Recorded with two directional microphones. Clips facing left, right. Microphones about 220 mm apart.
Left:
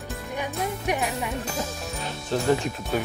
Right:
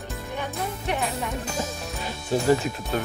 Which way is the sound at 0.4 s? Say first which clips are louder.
Left 2 dB; 10° left (ahead or behind).